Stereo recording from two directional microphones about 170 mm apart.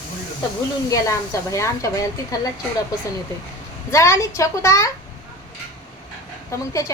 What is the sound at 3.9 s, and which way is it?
Speech, 20° left (ahead or behind).